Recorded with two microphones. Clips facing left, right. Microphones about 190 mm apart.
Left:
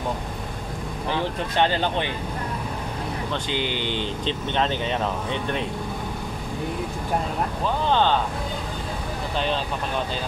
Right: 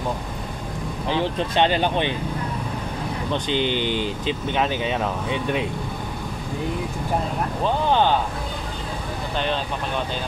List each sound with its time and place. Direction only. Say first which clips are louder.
1.0 s speech: right 3 dB; 20° right (ahead or behind)
3.4 s speech: right 7 dB; 20° right (ahead or behind)
7.9 s speech: right 1 dB; 15° right (ahead or behind)